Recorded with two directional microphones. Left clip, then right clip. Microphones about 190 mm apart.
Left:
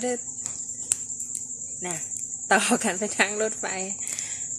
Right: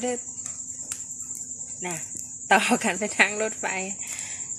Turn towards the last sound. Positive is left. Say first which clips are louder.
# left 1 dB
turn(degrees=0)  # may be behind; listen again after turning